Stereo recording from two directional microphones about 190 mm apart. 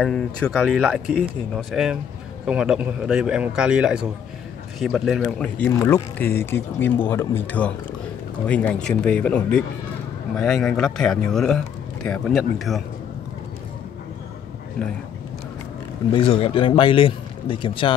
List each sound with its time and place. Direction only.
0.0 s a man's voice: 5° left (ahead or behind)
16.1 s speech: 30° left (ahead or behind)